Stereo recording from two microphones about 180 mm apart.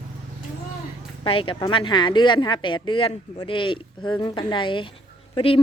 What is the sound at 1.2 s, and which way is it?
A woman's voice, 30° left (ahead or behind).